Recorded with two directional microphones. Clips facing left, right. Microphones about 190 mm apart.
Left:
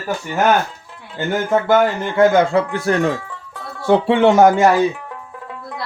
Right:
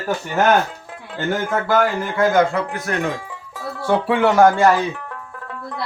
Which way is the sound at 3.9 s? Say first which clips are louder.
Left 4 dB; 25° left (ahead or behind).